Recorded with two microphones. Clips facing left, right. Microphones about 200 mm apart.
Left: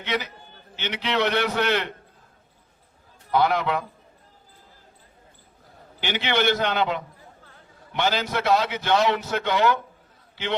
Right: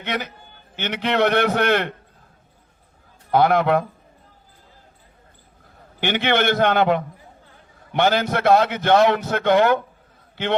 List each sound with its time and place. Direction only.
0.0 s a man's voice: 55° right (ahead or behind)
3.3 s a man's voice: 55° right (ahead or behind)
6.0 s a man's voice: 55° right (ahead or behind)